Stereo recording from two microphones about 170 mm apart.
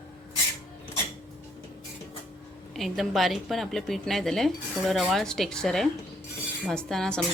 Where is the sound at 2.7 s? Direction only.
Centre (ahead or behind).